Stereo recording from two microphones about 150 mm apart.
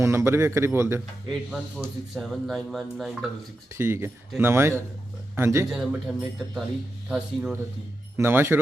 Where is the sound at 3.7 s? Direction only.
15° right (ahead or behind).